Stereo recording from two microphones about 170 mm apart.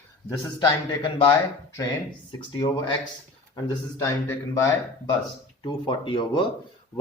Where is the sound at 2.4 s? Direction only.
30° left (ahead or behind).